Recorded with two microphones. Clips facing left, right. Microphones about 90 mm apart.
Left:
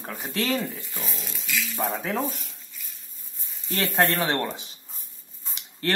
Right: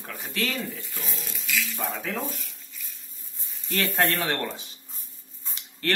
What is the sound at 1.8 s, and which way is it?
Speech, 25° left (ahead or behind).